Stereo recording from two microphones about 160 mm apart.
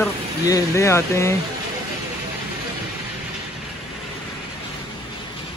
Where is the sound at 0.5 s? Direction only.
20° left (ahead or behind).